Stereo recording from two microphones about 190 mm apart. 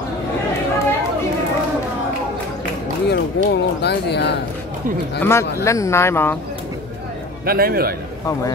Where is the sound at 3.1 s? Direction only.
60° left (ahead or behind).